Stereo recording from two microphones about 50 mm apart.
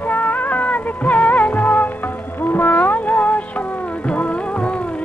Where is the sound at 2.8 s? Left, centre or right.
Left.